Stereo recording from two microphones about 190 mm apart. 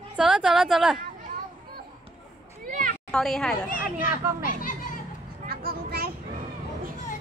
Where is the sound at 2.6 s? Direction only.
45° right (ahead or behind).